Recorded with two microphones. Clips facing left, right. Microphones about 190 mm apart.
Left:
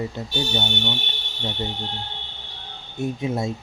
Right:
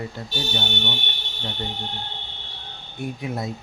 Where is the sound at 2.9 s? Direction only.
25° left (ahead or behind).